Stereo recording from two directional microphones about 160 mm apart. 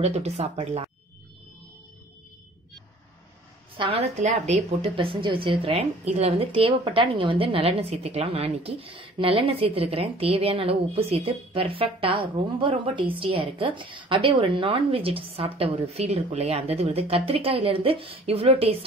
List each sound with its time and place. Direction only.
0.0 s speech: 45° right (ahead or behind)
3.7 s speech: 30° right (ahead or behind)
4.2 s speech: 40° right (ahead or behind)